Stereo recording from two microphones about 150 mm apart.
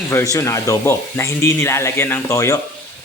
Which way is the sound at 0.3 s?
20° left (ahead or behind).